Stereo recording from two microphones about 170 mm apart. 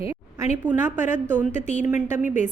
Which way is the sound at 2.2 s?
45° left (ahead or behind).